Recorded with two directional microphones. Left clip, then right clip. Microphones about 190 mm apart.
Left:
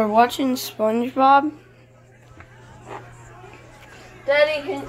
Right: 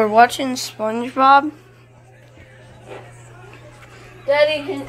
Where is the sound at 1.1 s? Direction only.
15° left (ahead or behind).